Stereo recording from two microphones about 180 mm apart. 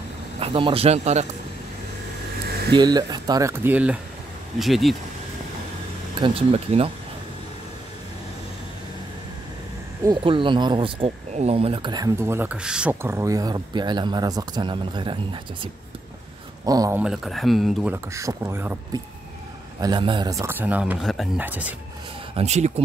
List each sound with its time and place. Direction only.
0.4 s speech: 30° right (ahead or behind)
2.7 s speech: 20° right (ahead or behind); by 4.9 s centre (ahead or behind)
6.1 s speech: 30° right (ahead or behind)
10.0 s speech: 30° right (ahead or behind)
16.6 s speech: 20° right (ahead or behind)
17.0 s speech: centre (ahead or behind)
17.9 s speech: 15° right (ahead or behind)
19.8 s speech: 25° right (ahead or behind); by 21.7 s 10° right (ahead or behind)
22.3 s speech: 35° right (ahead or behind)